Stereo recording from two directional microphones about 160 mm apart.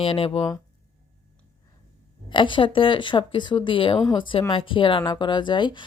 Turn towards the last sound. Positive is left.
turn(degrees=30)  # may be behind; listen again after turning